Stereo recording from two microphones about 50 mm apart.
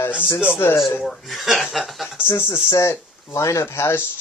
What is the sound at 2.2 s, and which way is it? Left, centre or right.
Speech, left.